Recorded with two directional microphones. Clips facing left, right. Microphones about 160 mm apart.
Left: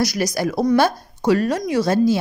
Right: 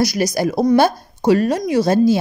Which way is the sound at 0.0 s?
25° right (ahead or behind).